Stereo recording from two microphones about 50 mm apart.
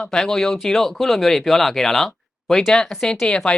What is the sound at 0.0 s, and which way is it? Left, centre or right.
Speech, centre.